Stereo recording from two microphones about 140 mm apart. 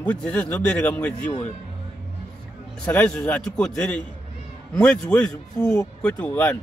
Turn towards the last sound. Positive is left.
turn(degrees=10)  # may be behind; listen again after turning